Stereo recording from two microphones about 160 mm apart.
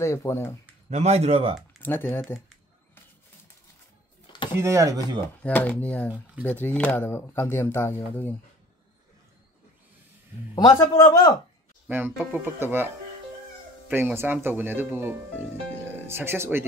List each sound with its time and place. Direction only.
0.0 s speech: 20° left (ahead or behind)
0.8 s a man's voice: 45° right (ahead or behind)
1.8 s speech: 15° left (ahead or behind)
4.6 s speech: 20° right (ahead or behind)
5.4 s speech: 10° left (ahead or behind)
10.5 s a man's voice: 25° left (ahead or behind)
11.9 s speech: 10° right (ahead or behind)